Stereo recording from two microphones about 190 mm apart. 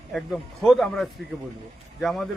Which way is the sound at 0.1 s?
Centre (ahead or behind).